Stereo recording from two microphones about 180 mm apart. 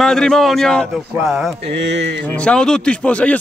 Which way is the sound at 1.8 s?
75° right (ahead or behind).